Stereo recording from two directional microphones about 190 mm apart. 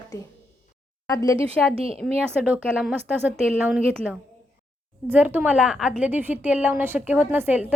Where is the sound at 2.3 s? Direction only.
5° right (ahead or behind).